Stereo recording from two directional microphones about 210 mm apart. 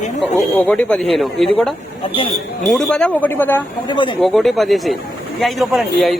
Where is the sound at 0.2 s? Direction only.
5° left (ahead or behind).